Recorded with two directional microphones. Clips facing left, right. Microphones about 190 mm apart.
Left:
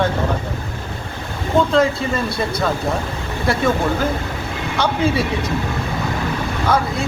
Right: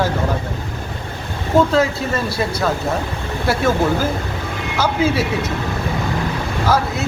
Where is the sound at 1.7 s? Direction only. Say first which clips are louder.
Left 1 dB; 5° right (ahead or behind).